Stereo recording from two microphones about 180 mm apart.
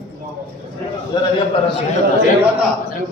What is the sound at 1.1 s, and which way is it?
Speech, 25° left (ahead or behind).